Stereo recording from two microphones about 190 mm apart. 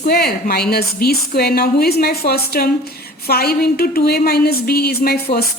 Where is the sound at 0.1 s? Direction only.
55° left (ahead or behind).